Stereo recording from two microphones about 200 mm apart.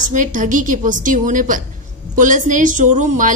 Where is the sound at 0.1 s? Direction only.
40° right (ahead or behind).